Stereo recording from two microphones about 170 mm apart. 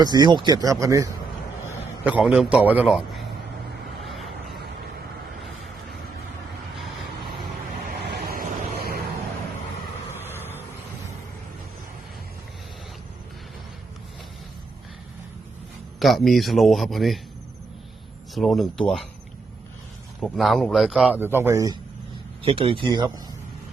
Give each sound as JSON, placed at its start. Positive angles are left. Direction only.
{"t": 0.0, "sound": "speech", "side_deg": -25}
{"t": 2.0, "sound": "a man's voice", "side_deg": -5}
{"t": 4.0, "sound": "vehicle", "side_deg": 0}
{"t": 8.0, "sound": "vehicle", "side_deg": -65}
{"t": 16.0, "sound": "a man's voice", "side_deg": 0}
{"t": 18.3, "sound": "a man's voice", "side_deg": 0}
{"t": 20.2, "sound": "a man's voice", "side_deg": 0}
{"t": 22.4, "sound": "speech", "side_deg": -30}